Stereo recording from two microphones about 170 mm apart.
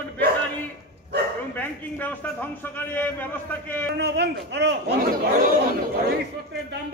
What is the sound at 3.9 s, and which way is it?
A man's voice, 80° right.